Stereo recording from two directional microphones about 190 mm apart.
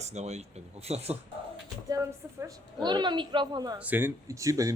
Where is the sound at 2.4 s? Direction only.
20° right (ahead or behind).